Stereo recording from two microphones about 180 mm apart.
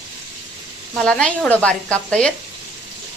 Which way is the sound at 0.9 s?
5° left (ahead or behind).